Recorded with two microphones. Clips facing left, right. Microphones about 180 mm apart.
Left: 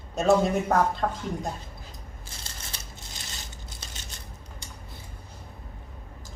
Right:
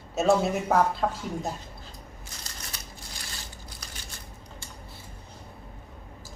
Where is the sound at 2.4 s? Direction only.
25° left (ahead or behind).